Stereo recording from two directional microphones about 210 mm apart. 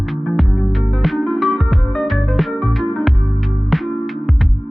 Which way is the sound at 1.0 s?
Centre (ahead or behind).